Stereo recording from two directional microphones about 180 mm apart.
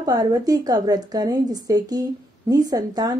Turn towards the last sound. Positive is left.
turn(degrees=-20)  # may be behind; listen again after turning